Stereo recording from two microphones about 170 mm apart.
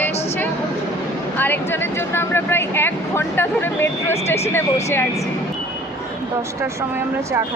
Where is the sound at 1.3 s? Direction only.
10° left (ahead or behind).